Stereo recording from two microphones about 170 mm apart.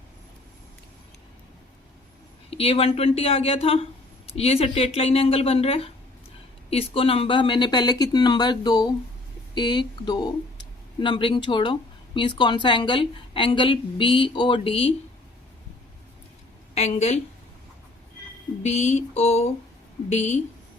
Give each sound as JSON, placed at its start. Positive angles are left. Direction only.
{"t": 2.5, "sound": "speech", "side_deg": 35}
{"t": 16.7, "sound": "speech", "side_deg": 40}
{"t": 18.6, "sound": "speech", "side_deg": 40}